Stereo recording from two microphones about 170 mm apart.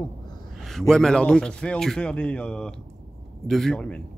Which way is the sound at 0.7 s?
5° left (ahead or behind).